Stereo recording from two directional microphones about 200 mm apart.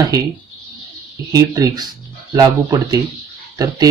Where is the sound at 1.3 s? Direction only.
15° right (ahead or behind).